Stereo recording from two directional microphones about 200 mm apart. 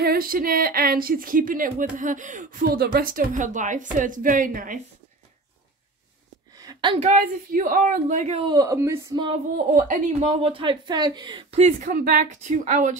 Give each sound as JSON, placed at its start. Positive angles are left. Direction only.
{"t": 0.0, "sound": "speech", "side_deg": -45}
{"t": 6.5, "sound": "speech", "side_deg": -20}
{"t": 8.5, "sound": "speech", "side_deg": -15}
{"t": 9.8, "sound": "speech", "side_deg": -40}